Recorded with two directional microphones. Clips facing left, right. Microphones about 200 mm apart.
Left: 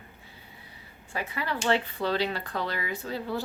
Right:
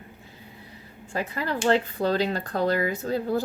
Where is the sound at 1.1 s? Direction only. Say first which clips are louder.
Right 4 dB; 40° right (ahead or behind).